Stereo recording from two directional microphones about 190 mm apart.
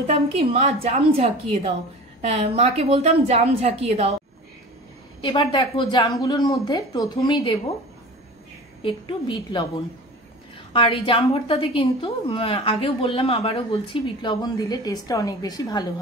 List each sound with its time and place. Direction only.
0.0 s a woman's voice: 30° right (ahead or behind)
5.2 s a woman's voice: 25° left (ahead or behind)
8.8 s a woman's voice: 25° left (ahead or behind)